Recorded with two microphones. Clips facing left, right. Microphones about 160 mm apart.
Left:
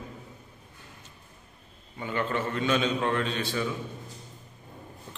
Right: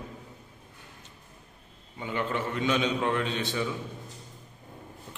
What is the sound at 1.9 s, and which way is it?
A man's voice, 15° right (ahead or behind).